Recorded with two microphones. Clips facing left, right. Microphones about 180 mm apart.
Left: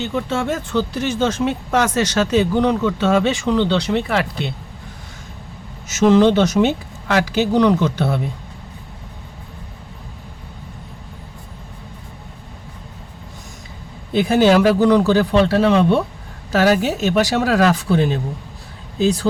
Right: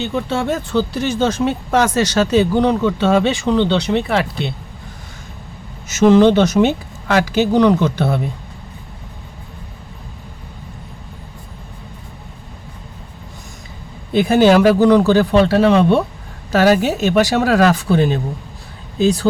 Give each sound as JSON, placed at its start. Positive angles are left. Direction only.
{"t": 0.0, "sound": "speech", "side_deg": -30}
{"t": 5.9, "sound": "speech", "side_deg": -55}
{"t": 14.1, "sound": "speech", "side_deg": -55}